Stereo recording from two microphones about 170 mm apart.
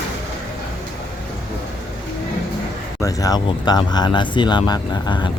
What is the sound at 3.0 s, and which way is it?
Speech, 20° left (ahead or behind).